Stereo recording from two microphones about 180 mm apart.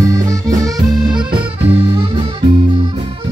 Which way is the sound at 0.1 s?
20° right (ahead or behind).